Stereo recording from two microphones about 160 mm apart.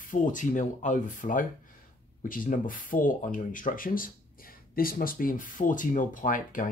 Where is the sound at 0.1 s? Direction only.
55° left (ahead or behind).